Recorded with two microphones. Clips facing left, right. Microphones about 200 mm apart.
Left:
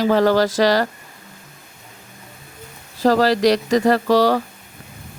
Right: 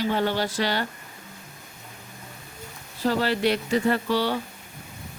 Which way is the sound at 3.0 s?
90° left.